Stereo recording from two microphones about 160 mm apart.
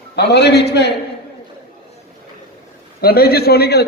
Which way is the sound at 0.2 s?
90° left.